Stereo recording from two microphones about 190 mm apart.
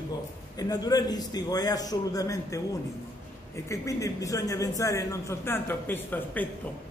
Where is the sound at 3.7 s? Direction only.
15° left (ahead or behind).